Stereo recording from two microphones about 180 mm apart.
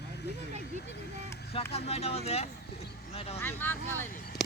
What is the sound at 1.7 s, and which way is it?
Speech, 35° left (ahead or behind).